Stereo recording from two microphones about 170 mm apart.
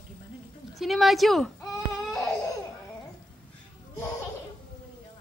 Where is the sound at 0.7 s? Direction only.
Centre (ahead or behind).